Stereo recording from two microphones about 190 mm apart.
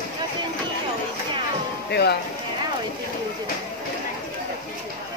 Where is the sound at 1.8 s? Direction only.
60° left (ahead or behind).